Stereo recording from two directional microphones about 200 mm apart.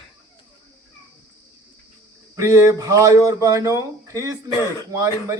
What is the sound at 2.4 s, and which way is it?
Speech, 15° right (ahead or behind).